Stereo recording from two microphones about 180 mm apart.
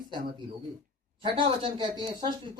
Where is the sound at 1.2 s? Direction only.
30° right (ahead or behind).